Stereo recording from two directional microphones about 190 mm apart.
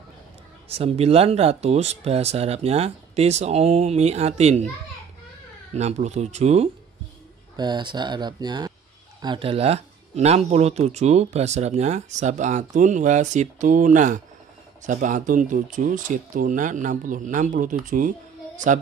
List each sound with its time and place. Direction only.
0.7 s speech: 30° right (ahead or behind)
5.8 s speech: 35° right (ahead or behind)
7.5 s speech: 25° right (ahead or behind); by 18.1 s 45° right (ahead or behind)